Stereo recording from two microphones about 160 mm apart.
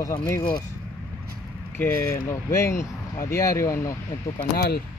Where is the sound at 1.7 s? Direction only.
15° left (ahead or behind).